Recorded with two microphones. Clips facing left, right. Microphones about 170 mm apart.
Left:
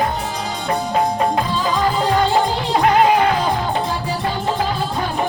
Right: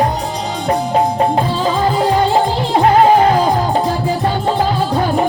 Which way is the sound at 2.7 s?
35° right (ahead or behind).